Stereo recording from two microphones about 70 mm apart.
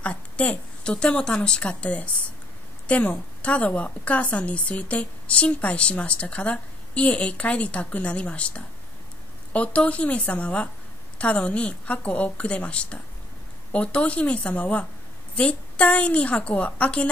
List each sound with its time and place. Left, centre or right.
0.0 s a woman's voice: centre